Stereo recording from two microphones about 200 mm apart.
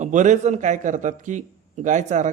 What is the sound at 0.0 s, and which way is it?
Speech, 40° right (ahead or behind).